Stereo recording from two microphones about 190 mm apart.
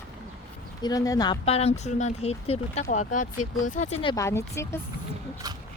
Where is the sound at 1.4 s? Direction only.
30° left (ahead or behind).